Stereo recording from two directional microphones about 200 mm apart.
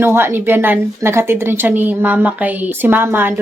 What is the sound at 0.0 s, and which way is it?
Speech, 10° right (ahead or behind).